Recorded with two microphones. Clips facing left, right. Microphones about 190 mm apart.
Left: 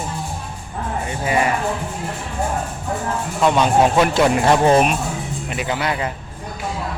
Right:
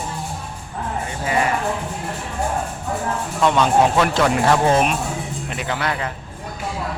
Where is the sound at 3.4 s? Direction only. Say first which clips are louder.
Left 1 dB; 10° left (ahead or behind).